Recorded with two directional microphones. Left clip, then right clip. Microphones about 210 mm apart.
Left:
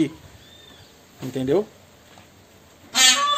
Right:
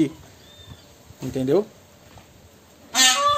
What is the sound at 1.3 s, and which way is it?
Speech, 5° right (ahead or behind).